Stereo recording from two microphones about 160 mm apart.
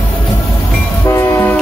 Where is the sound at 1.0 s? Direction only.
15° left (ahead or behind).